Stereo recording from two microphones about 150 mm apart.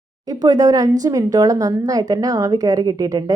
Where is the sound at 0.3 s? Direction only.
25° right (ahead or behind).